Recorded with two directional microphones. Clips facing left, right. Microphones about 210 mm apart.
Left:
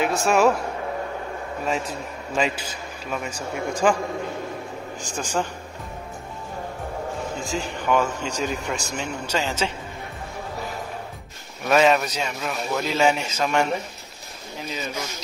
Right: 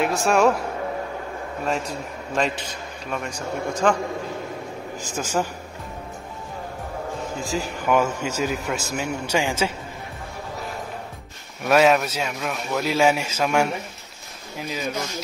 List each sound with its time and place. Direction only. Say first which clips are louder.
0.0 s a man's voice: even; centre (ahead or behind)
3.1 s speech: right 1 dB; 5° left (ahead or behind)
5.1 s a man's voice: right 1 dB; 5° right (ahead or behind)
7.3 s a man's voice: right 1 dB; centre (ahead or behind)
11.6 s a man's voice: right 1 dB; 5° right (ahead or behind)
14.7 s a man's voice: right 3 dB; 5° right (ahead or behind)